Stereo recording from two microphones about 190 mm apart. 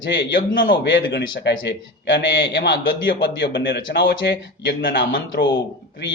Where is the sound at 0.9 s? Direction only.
65° left (ahead or behind).